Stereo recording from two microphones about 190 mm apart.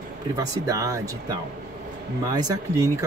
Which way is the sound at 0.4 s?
15° right (ahead or behind).